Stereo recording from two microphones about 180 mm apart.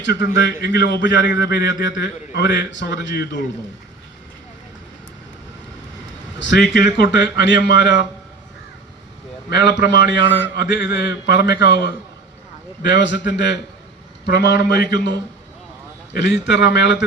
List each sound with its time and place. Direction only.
0.0 s a man's voice: 80° left
6.4 s a man's voice: 75° left (ahead or behind)
9.5 s a man's voice: 75° left (ahead or behind)
12.8 s a man's voice: 80° left
16.1 s a man's voice: 75° left (ahead or behind)